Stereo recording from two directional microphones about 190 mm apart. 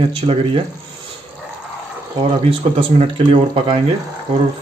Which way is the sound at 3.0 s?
30° right (ahead or behind).